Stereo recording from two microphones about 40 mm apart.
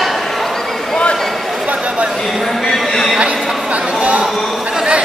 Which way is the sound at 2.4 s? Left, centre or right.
Centre.